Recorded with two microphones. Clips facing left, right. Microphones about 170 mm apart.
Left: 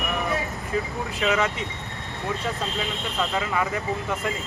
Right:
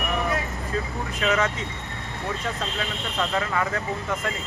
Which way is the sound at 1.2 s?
20° left (ahead or behind).